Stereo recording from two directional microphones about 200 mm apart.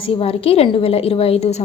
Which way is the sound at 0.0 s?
30° left (ahead or behind).